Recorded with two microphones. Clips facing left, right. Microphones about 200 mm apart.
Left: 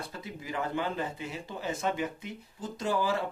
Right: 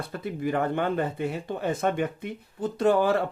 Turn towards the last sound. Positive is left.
turn(degrees=-60)  # may be behind; listen again after turning